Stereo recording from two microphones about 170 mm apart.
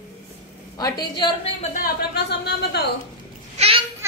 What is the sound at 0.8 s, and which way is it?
Speech, 25° left (ahead or behind).